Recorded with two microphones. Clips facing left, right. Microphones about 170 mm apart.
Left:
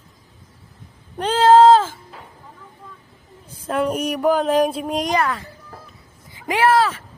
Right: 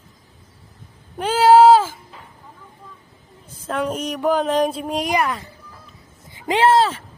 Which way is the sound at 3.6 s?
5° left (ahead or behind).